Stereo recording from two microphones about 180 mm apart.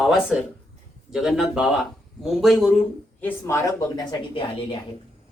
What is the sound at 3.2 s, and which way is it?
A woman's voice, 15° left (ahead or behind).